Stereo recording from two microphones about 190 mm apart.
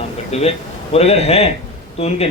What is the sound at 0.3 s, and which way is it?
Speech, 35° left (ahead or behind).